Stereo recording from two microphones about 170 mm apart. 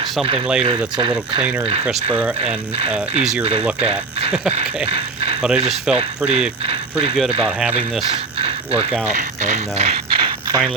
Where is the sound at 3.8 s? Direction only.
35° right (ahead or behind).